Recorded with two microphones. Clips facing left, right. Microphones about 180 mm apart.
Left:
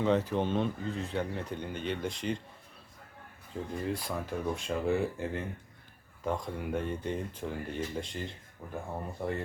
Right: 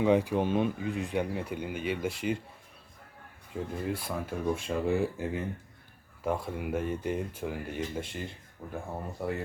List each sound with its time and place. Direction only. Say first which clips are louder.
0.0 s speech: right 3 dB; 10° right (ahead or behind)
3.5 s speech: right 1 dB; 5° right (ahead or behind)